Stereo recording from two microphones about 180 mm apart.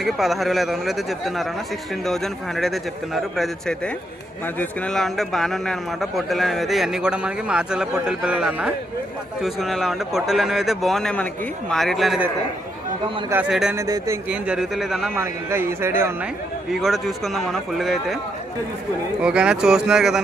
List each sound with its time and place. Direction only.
0.0 s a man's voice: centre (ahead or behind)
13.3 s a man's voice: 5° right (ahead or behind)
13.7 s speech: 15° right (ahead or behind)
14.3 s a man's voice: 5° right (ahead or behind)
15.1 s speech: 15° right (ahead or behind)
16.8 s a man's voice: centre (ahead or behind)
19.2 s a man's voice: 5° right (ahead or behind)